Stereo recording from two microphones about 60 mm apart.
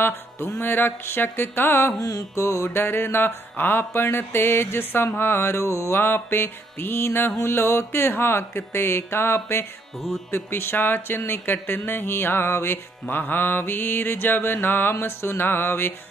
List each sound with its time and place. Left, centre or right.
0.0 s music: left
2.0 s music: left
2.4 s music: left
2.8 s music: left
5.7 s music: left
5.9 s music: left
7.4 s a sound: left
9.9 s music: centre
10.3 s music: left
13.0 s music: left